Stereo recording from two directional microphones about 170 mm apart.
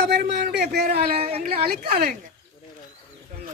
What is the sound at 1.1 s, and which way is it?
Speech, 35° right (ahead or behind).